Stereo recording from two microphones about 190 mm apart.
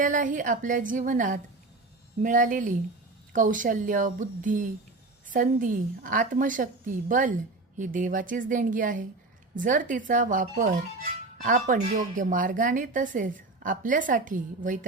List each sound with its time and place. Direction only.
0.0 s a woman's voice: 45° right (ahead or behind)